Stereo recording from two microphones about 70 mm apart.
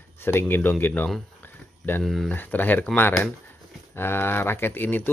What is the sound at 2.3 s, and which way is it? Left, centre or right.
Speech, left.